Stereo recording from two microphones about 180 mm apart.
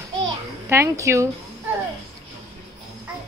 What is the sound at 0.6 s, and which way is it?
Speech, 15° right (ahead or behind).